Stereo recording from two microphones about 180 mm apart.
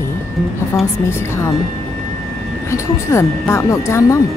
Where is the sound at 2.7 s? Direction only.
15° left (ahead or behind).